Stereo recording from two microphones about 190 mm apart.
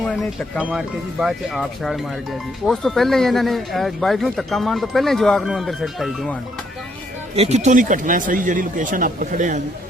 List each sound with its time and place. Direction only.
0.0 s speech: centre (ahead or behind)
7.3 s speech: 35° right (ahead or behind)